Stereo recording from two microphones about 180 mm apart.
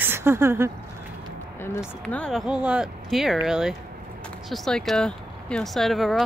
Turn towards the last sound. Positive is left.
turn(degrees=0)  # may be behind; listen again after turning